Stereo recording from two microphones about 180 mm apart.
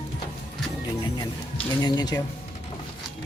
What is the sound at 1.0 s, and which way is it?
Music, 25° left (ahead or behind).